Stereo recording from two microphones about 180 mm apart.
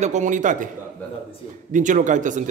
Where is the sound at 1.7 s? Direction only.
45° right (ahead or behind).